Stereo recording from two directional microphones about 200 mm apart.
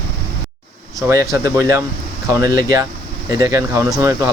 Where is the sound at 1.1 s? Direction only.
15° right (ahead or behind).